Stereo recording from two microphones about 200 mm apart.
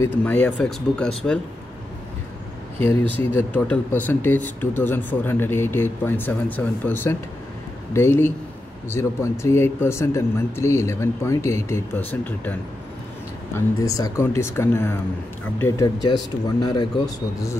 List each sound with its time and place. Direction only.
0.0 s speech: 10° left (ahead or behind)
2.8 s speech: 10° left (ahead or behind)